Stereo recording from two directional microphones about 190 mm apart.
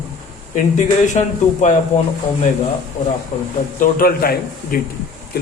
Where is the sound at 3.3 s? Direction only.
40° left (ahead or behind).